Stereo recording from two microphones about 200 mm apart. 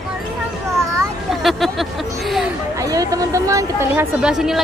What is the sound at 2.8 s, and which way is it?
Speech, 15° right (ahead or behind).